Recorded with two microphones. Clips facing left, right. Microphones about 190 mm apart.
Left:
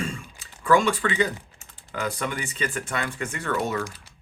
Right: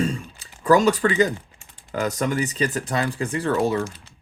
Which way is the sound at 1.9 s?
40° right (ahead or behind).